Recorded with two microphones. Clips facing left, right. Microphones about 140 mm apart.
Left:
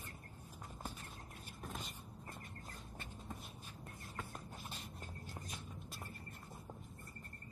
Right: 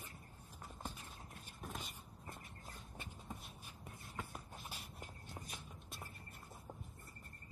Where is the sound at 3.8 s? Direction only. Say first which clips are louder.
Even; 5° right (ahead or behind).